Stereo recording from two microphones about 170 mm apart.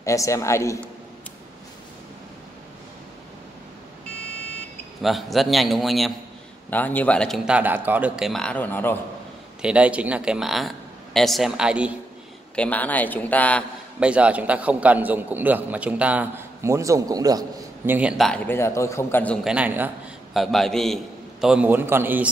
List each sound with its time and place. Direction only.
0.0 s a man's voice: 20° left (ahead or behind)
5.0 s a man's voice: centre (ahead or behind)
6.7 s a man's voice: 10° left (ahead or behind); by 8.3 s 10° right (ahead or behind)
8.3 s a man's voice: 5° left (ahead or behind)
9.6 s a man's voice: 5° right (ahead or behind)
12.5 s a man's voice: 10° left (ahead or behind)
13.9 s a man's voice: 5° right (ahead or behind)
17.9 s a man's voice: 5° right (ahead or behind); by 19.3 s 15° left (ahead or behind)
19.4 s a man's voice: 10° right (ahead or behind)
20.3 s a man's voice: centre (ahead or behind)